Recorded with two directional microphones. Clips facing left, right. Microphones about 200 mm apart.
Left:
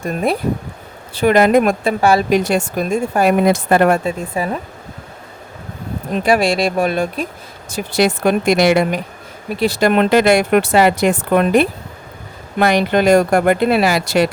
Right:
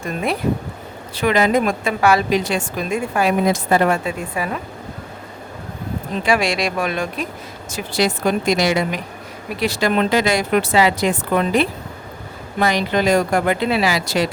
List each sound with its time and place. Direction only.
0.0 s speech: 40° left (ahead or behind)
1.3 s speech: 60° left (ahead or behind)
1.8 s speech: 30° left (ahead or behind)
2.5 s a woman's voice: 40° left (ahead or behind)
3.3 s speech: 65° left (ahead or behind)
4.0 s speech: 35° left (ahead or behind)
6.2 s speech: 35° left (ahead or behind)
7.8 s speech: 60° left (ahead or behind)